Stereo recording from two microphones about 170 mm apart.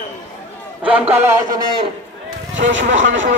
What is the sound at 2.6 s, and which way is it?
Speech, 90° right.